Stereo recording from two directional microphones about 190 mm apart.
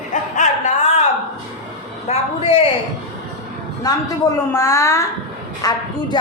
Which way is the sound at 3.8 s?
20° left (ahead or behind).